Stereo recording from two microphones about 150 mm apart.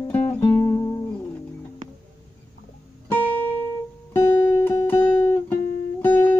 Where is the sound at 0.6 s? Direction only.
20° left (ahead or behind).